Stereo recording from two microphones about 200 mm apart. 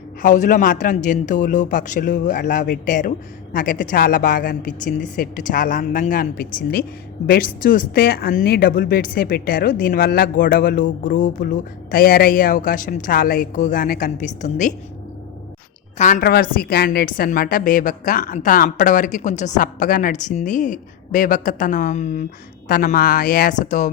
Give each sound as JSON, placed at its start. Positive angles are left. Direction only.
{"t": 0.2, "sound": "a woman's voice", "side_deg": 40}
{"t": 16.0, "sound": "a woman's voice", "side_deg": 35}
{"t": 16.2, "sound": "a woman's voice", "side_deg": 50}